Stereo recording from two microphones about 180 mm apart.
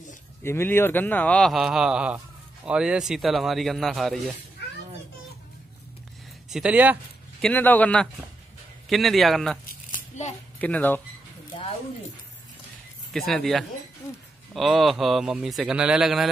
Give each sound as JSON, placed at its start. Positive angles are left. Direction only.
{"t": 0.4, "sound": "a man's voice", "side_deg": 15}
{"t": 6.5, "sound": "speech", "side_deg": -5}
{"t": 7.4, "sound": "a man's voice", "side_deg": 10}
{"t": 10.1, "sound": "a sound", "side_deg": 40}
{"t": 10.6, "sound": "a man's voice", "side_deg": 10}
{"t": 13.1, "sound": "a man's voice", "side_deg": 0}